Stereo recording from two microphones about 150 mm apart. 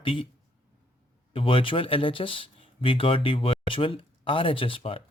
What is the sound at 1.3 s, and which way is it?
Speech, 40° left (ahead or behind).